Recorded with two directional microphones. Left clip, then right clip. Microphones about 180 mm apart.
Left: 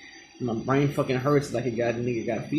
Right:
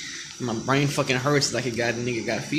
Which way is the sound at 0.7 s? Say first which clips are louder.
Right 2 dB; 15° right (ahead or behind).